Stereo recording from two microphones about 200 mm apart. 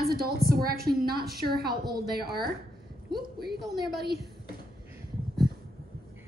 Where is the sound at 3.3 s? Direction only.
50° right (ahead or behind).